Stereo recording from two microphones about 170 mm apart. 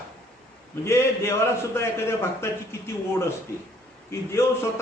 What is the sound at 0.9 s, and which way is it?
A man's voice, 15° left (ahead or behind).